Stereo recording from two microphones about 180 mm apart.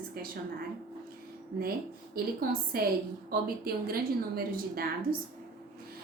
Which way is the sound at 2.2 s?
55° right (ahead or behind).